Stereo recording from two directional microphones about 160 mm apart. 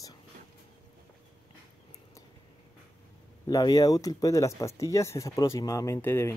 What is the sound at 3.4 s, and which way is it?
Speech, 25° left (ahead or behind).